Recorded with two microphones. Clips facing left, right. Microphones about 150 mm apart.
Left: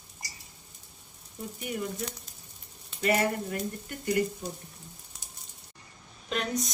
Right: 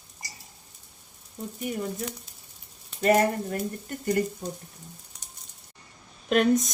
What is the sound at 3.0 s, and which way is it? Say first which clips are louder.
Speech: right 5 dB; 45° right (ahead or behind).